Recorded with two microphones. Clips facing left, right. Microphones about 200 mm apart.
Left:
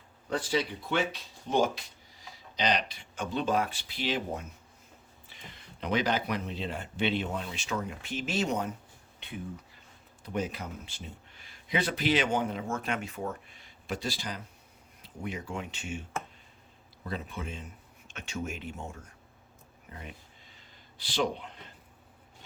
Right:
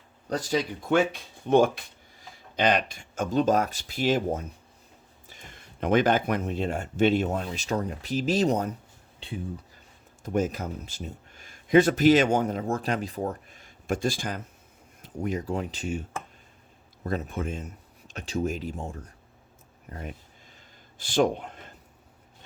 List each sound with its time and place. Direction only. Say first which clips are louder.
0.3 s speech: right 3 dB; 40° right (ahead or behind)
10.2 s speech: right 7 dB; 45° right (ahead or behind)
19.9 s speech: right 7 dB; 45° right (ahead or behind)